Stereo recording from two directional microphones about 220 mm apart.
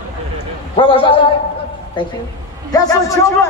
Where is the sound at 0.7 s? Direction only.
25° left (ahead or behind).